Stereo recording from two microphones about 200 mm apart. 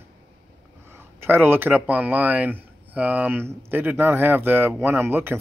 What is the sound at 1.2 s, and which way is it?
Speech, 10° right (ahead or behind).